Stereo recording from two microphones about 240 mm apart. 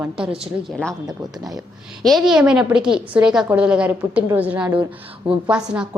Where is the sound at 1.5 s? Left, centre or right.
Centre.